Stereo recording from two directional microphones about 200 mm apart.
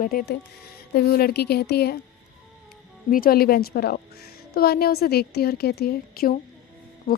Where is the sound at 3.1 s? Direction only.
45° left (ahead or behind).